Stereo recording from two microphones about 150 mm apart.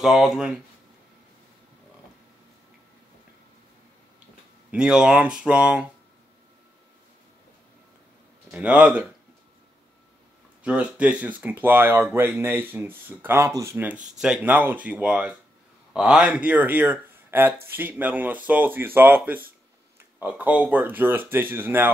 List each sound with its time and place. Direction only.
0.0 s speech: centre (ahead or behind)
4.6 s speech: 5° right (ahead or behind)
8.5 s speech: 5° right (ahead or behind)
10.6 s speech: 10° right (ahead or behind)
13.9 s speech: 55° right (ahead or behind)
14.2 s speech: 5° right (ahead or behind)